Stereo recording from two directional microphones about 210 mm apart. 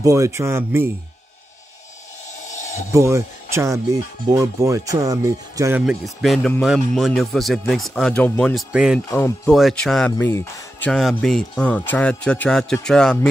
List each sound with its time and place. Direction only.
0.0 s speech: 15° right (ahead or behind)
2.5 s a sound: 35° left (ahead or behind)
2.9 s speech: 15° right (ahead or behind)
6.2 s speech: centre (ahead or behind)